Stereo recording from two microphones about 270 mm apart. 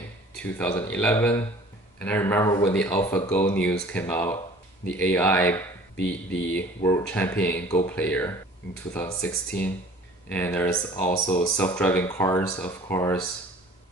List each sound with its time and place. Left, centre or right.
0.8 s speech: centre